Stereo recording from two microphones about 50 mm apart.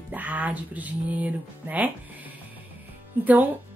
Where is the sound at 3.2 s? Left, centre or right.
Right.